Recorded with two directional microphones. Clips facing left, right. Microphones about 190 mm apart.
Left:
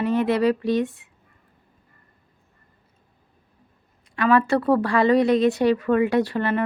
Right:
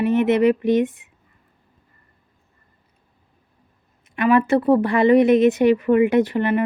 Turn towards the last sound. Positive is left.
turn(degrees=-15)  # may be behind; listen again after turning